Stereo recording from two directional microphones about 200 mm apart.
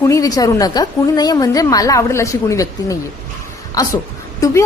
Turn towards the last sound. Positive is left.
turn(degrees=15)  # may be behind; listen again after turning